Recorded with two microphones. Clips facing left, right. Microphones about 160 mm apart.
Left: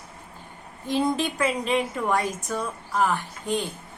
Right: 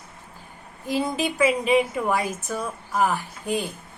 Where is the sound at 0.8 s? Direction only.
5° right (ahead or behind).